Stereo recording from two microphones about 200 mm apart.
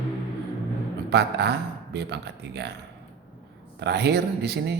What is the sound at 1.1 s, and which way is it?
A man's voice, 55° right (ahead or behind).